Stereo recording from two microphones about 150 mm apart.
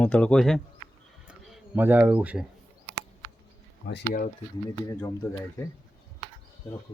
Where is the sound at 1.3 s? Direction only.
Centre (ahead or behind).